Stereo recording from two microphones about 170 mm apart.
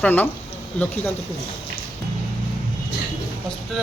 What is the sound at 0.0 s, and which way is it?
Speech, 10° left (ahead or behind).